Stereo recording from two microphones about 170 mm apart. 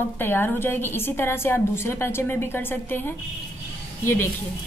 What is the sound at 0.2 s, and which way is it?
A woman's voice, 10° left (ahead or behind).